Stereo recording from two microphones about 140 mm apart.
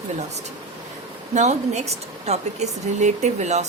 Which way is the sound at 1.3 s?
55° right (ahead or behind).